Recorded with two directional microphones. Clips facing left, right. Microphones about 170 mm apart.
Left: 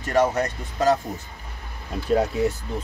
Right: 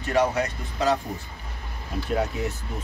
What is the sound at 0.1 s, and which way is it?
Speech, 45° left (ahead or behind).